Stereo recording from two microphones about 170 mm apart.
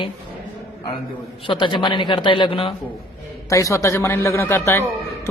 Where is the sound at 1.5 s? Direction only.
30° left (ahead or behind).